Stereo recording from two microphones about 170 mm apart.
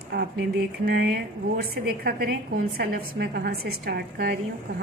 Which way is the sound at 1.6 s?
65° right (ahead or behind).